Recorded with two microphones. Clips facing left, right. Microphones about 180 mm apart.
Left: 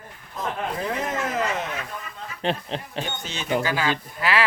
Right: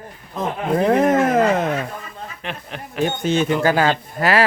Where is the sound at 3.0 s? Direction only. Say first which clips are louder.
Right 14 dB; 55° right (ahead or behind).